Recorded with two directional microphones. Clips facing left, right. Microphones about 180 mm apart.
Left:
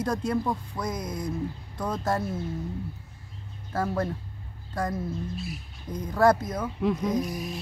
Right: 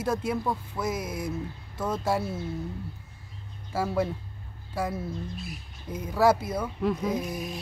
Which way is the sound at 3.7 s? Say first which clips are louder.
Right 1 dB; 10° right (ahead or behind).